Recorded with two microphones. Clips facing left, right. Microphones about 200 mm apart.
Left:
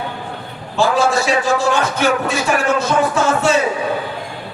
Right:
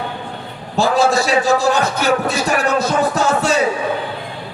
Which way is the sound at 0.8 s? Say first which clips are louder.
Right 1 dB; 40° right (ahead or behind).